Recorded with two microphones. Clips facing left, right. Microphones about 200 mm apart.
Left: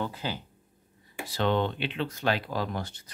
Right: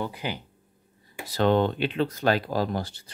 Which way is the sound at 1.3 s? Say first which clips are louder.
Right 5 dB; 45° right (ahead or behind).